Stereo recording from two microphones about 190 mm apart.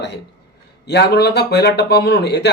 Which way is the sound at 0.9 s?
60° left (ahead or behind).